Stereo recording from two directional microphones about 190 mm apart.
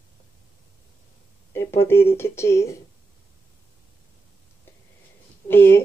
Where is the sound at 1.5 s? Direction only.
15° left (ahead or behind).